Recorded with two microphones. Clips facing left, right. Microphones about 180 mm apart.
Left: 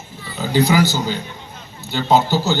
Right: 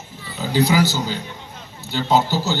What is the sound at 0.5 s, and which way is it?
A man's voice, 55° left (ahead or behind).